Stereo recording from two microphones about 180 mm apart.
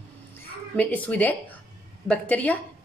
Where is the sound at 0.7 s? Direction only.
10° left (ahead or behind).